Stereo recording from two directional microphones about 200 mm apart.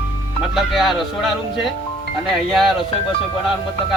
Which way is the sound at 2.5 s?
Centre (ahead or behind).